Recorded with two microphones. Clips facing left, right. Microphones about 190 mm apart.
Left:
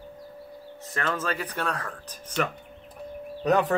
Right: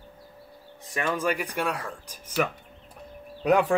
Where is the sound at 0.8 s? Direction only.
15° right (ahead or behind).